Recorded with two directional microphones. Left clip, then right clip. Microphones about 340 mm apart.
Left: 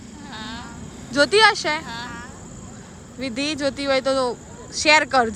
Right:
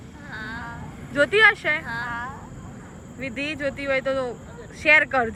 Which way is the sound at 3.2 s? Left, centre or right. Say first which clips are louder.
Left 3 dB; centre.